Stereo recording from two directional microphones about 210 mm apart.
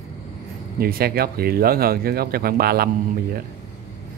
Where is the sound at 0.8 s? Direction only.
45° right (ahead or behind).